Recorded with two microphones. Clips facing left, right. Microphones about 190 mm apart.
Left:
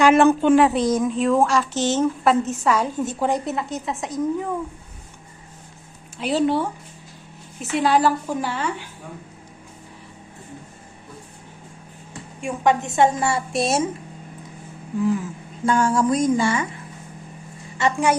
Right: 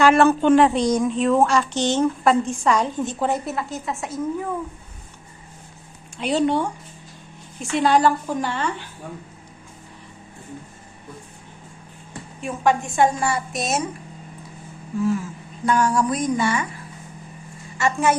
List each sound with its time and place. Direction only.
0.0 s a woman's voice: 15° left (ahead or behind)
6.1 s a woman's voice: centre (ahead or behind)
12.4 s a woman's voice: 20° left (ahead or behind)
15.0 s a woman's voice: 20° left (ahead or behind)
17.7 s a woman's voice: 20° left (ahead or behind)